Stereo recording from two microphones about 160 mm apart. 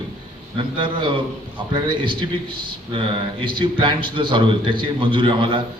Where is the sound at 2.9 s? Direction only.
30° right (ahead or behind).